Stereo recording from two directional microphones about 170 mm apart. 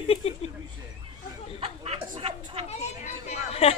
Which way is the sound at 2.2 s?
35° right (ahead or behind).